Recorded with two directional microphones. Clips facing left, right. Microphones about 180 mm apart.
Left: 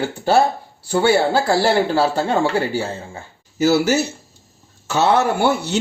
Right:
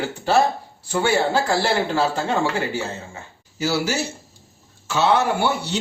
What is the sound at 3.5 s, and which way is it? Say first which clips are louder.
Speech: left 7 dB; 45° left (ahead or behind).